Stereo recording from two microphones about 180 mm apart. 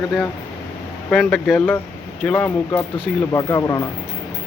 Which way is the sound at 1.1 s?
5° left (ahead or behind).